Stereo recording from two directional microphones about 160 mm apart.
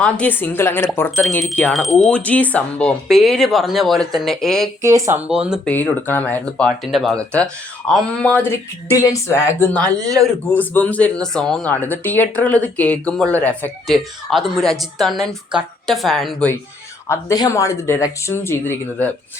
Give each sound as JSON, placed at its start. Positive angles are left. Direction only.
{"t": 0.0, "sound": "speech", "side_deg": 10}
{"t": 4.8, "sound": "speech", "side_deg": -20}
{"t": 5.3, "sound": "speech", "side_deg": -5}
{"t": 5.6, "sound": "speech", "side_deg": 10}
{"t": 17.1, "sound": "speech", "side_deg": 20}